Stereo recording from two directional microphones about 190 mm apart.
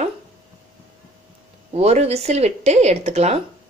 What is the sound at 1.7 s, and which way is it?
A woman's voice, 35° right (ahead or behind).